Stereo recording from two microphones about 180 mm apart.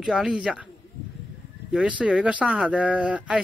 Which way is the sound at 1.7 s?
5° right (ahead or behind).